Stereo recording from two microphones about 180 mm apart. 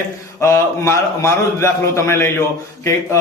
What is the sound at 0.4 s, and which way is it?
A man's voice, 15° left (ahead or behind).